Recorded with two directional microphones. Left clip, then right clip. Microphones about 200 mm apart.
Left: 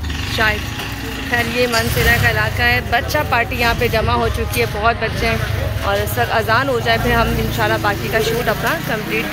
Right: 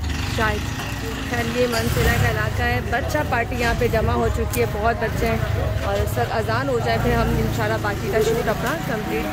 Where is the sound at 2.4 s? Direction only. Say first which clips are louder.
Left 7 dB; 5° right (ahead or behind).